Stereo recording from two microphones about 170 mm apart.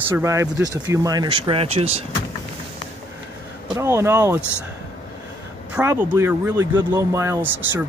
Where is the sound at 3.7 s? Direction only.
15° right (ahead or behind).